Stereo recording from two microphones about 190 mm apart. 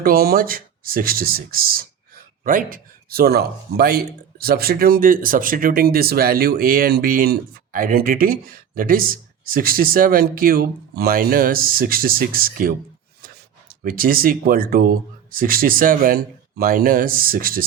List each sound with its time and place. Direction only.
0.0 s speech: 50° right (ahead or behind)